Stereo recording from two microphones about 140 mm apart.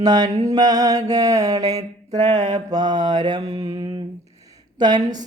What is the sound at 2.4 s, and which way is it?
Mantra, 30° right (ahead or behind).